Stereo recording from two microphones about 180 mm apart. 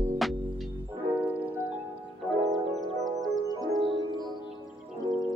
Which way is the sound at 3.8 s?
25° right (ahead or behind).